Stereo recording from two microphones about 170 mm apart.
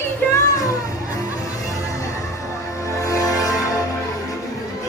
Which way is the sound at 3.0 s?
20° left (ahead or behind).